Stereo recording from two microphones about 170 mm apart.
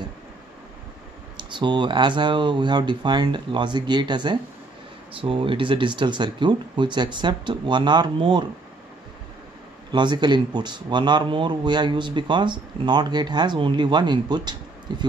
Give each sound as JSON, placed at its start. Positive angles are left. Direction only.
{"t": 1.5, "sound": "a man's voice", "side_deg": -25}
{"t": 9.8, "sound": "a man's voice", "side_deg": -25}